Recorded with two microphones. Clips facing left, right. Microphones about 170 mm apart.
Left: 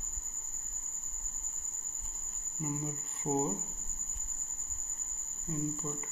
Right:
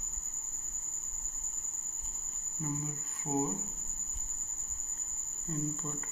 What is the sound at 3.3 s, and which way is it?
Speech, 15° left (ahead or behind).